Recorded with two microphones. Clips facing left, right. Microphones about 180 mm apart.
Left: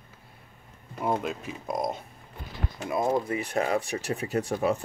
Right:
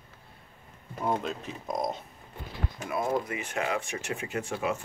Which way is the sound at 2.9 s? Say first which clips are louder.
Left 3 dB; 25° left (ahead or behind).